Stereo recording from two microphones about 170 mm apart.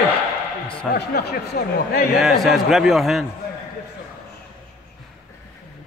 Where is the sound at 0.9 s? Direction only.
70° left (ahead or behind).